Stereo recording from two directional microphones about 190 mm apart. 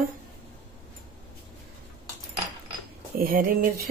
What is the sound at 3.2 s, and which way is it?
Speech, 50° right (ahead or behind).